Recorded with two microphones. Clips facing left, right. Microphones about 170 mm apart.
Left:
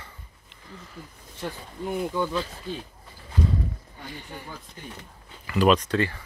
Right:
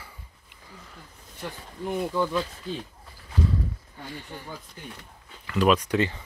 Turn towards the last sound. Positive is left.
turn(degrees=-20)  # may be behind; listen again after turning